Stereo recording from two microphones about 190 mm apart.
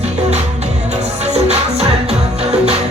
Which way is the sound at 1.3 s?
35° right (ahead or behind).